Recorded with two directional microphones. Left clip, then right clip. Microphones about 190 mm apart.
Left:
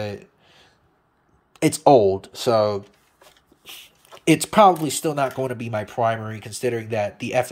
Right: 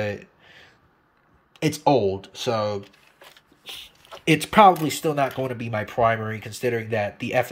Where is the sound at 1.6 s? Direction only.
15° left (ahead or behind).